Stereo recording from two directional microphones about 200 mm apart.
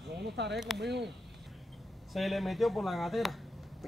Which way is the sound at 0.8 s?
55° right (ahead or behind).